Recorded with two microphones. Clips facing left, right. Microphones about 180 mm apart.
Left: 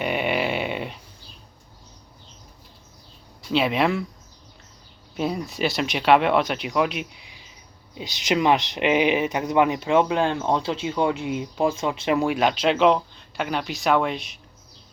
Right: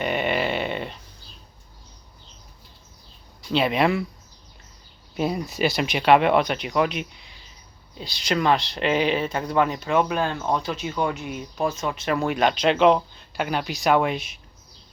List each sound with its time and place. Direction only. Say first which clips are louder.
0.0 s a sound: even; 5° left (ahead or behind)
3.5 s speech: even; centre (ahead or behind)
5.1 s speech: right 1 dB; centre (ahead or behind)
7.9 s speech: left 2 dB; 15° left (ahead or behind)
12.1 s speech: even; 5° left (ahead or behind)